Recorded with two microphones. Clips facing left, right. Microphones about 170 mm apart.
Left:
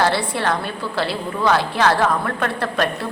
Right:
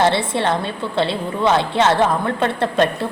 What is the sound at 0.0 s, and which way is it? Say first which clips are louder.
A woman's voice: right 2 dB; 25° right (ahead or behind).